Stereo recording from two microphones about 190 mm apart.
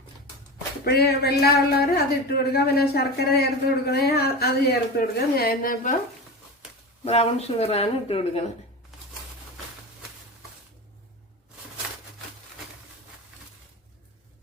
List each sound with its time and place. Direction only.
0.9 s speech: 55° left (ahead or behind)
7.0 s speech: 35° left (ahead or behind)